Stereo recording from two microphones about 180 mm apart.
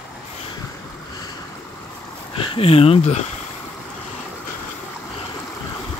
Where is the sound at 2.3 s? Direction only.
30° left (ahead or behind).